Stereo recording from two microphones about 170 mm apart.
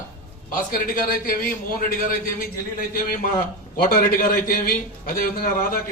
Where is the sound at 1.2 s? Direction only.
55° left (ahead or behind).